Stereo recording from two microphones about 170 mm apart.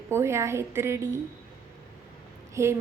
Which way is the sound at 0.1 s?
15° right (ahead or behind).